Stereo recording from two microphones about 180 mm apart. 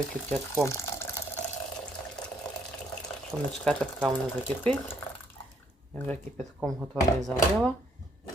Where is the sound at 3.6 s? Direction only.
5° left (ahead or behind).